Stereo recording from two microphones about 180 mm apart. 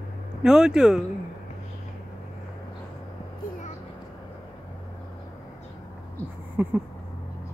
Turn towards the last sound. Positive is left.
turn(degrees=-10)  # may be behind; listen again after turning